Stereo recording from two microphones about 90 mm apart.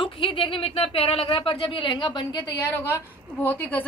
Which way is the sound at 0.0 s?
70° left (ahead or behind).